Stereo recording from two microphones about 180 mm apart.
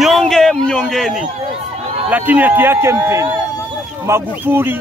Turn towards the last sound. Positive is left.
turn(degrees=-10)  # may be behind; listen again after turning